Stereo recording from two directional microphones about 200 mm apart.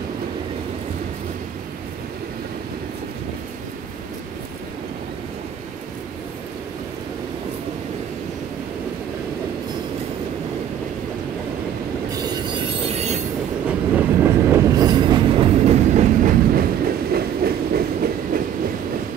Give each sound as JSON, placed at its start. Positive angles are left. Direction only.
{"t": 12.1, "sound": "train", "side_deg": -30}
{"t": 13.7, "sound": "train", "side_deg": -10}
{"t": 17.1, "sound": "train", "side_deg": -50}